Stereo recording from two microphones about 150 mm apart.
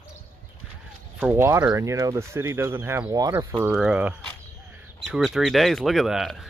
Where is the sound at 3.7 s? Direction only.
5° right (ahead or behind).